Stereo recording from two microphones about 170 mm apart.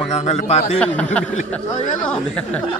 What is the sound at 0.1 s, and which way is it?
Speech, 40° left (ahead or behind).